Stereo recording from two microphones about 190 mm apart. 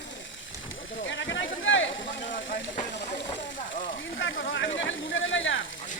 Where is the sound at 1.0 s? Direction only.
80° left.